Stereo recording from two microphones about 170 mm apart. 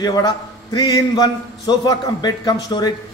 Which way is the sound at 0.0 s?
20° left (ahead or behind).